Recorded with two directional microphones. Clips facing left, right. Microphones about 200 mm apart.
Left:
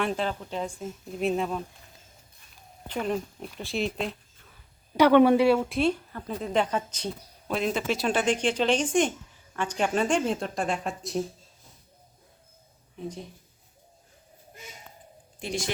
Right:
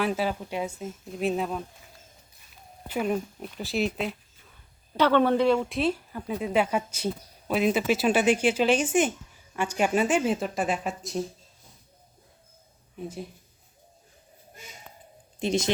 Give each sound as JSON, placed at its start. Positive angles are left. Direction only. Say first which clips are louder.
{"t": 0.0, "sound": "speech", "louder": "right 1 dB", "side_deg": -5}
{"t": 2.8, "sound": "speech", "louder": "right 2 dB", "side_deg": -5}
{"t": 4.9, "sound": "speech", "louder": "left 3 dB", "side_deg": 15}
{"t": 15.4, "sound": "speech", "louder": "right 6 dB", "side_deg": -20}